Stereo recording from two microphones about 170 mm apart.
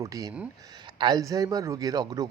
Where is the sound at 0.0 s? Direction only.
20° right (ahead or behind).